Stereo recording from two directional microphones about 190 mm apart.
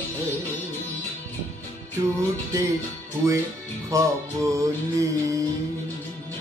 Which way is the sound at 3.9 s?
15° right (ahead or behind).